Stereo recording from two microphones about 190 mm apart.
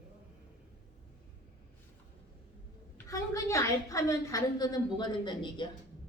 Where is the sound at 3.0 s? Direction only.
15° left (ahead or behind).